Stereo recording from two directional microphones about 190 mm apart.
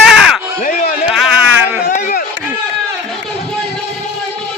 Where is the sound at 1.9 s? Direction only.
45° left (ahead or behind).